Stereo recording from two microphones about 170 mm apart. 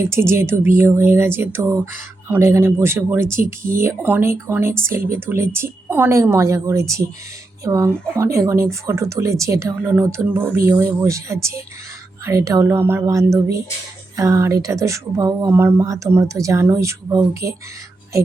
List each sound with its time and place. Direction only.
0.0 s speech: 15° right (ahead or behind)